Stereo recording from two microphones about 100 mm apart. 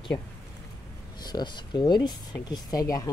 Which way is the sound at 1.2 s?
45° left (ahead or behind).